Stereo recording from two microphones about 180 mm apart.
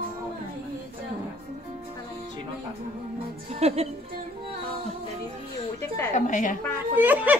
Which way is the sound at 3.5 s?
35° right (ahead or behind).